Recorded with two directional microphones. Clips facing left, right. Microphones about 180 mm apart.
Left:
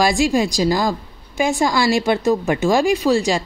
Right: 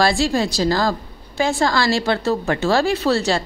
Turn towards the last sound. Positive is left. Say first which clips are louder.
# left 2 dB
turn(degrees=10)  # may be behind; listen again after turning